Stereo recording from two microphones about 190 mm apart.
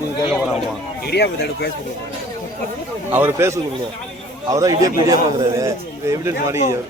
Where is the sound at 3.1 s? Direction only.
10° right (ahead or behind).